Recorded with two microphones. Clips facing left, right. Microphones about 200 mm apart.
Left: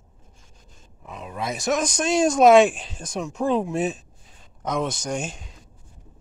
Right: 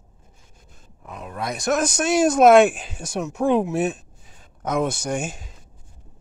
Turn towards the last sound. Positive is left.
turn(degrees=-5)  # may be behind; listen again after turning